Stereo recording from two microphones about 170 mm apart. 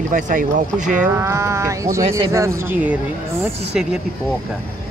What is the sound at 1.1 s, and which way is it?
Speech, 15° right (ahead or behind).